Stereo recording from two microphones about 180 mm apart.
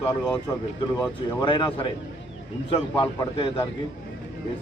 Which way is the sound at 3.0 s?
30° left (ahead or behind).